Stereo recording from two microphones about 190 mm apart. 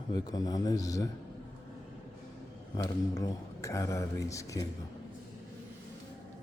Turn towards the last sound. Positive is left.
turn(degrees=15)  # may be behind; listen again after turning